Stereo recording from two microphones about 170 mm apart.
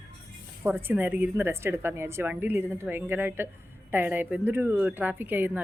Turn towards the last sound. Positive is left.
turn(degrees=-10)  # may be behind; listen again after turning